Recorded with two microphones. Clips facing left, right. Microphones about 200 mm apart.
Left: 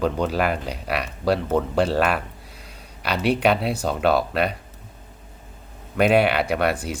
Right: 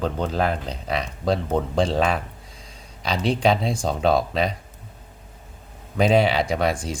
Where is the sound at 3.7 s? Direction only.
65° left (ahead or behind).